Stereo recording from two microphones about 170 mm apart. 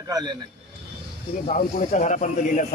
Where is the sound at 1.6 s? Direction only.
45° left (ahead or behind).